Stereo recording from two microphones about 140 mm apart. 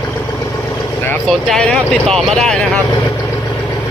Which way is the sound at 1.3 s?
5° left (ahead or behind).